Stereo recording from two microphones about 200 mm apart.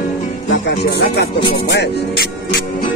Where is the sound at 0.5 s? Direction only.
60° left (ahead or behind).